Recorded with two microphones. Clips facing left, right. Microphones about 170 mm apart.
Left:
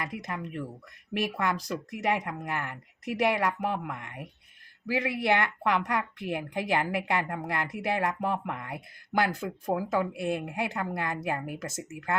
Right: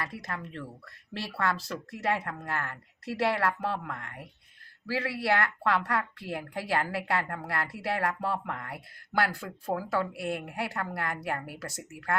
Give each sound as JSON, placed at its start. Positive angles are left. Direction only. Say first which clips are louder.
{"t": 0.0, "sound": "a woman's voice", "louder": "left 2 dB", "side_deg": 20}